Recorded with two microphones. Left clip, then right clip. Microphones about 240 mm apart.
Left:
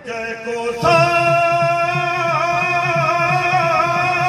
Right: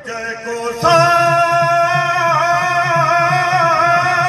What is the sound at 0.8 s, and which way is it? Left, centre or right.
Music, right.